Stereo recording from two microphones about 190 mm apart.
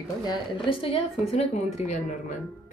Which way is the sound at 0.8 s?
30° left (ahead or behind).